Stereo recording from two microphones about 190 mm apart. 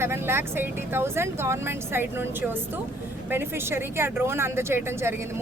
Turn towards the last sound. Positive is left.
turn(degrees=-15)  # may be behind; listen again after turning